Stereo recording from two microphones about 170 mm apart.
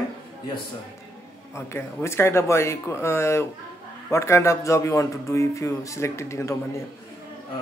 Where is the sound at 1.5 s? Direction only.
15° left (ahead or behind).